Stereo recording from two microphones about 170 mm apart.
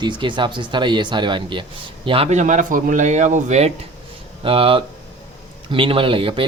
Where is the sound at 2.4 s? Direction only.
50° right (ahead or behind).